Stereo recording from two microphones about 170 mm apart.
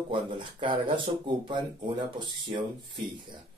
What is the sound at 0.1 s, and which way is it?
Speech, 30° right (ahead or behind).